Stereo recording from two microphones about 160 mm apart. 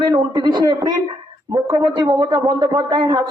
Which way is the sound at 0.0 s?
30° right (ahead or behind).